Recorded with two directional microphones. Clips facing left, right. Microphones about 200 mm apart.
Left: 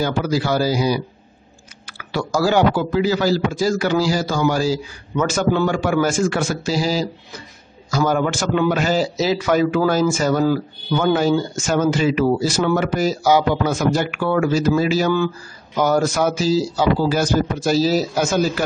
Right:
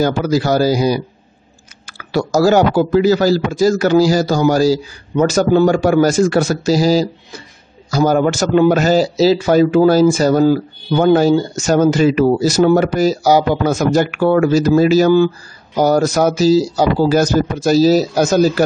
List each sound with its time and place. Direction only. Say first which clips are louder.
0.0 s a man's voice: right 5 dB; 40° right (ahead or behind)